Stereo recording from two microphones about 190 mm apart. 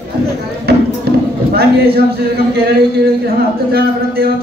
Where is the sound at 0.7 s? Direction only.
55° right (ahead or behind).